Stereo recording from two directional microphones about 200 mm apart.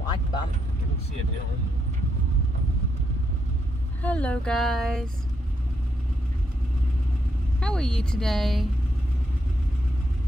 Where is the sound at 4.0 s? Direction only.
5° left (ahead or behind).